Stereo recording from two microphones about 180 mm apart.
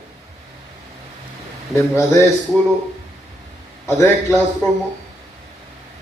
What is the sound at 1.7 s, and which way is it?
Speech, 15° left (ahead or behind).